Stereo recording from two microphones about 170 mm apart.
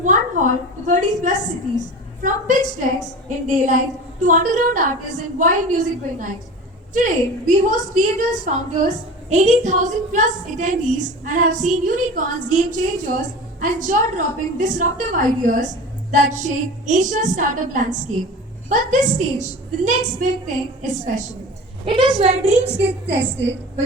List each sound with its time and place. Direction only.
0.0 s a woman's voice: 50° right (ahead or behind)
21.8 s a woman's voice: 30° right (ahead or behind)